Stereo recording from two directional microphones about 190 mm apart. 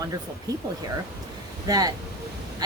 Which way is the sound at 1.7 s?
20° right (ahead or behind).